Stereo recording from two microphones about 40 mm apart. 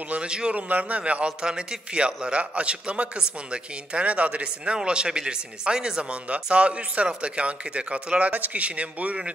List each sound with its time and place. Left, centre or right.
0.2 s a man's voice: right
0.6 s speech: right
1.4 s a man's voice: centre
6.2 s a man's voice: right
8.3 s speech: right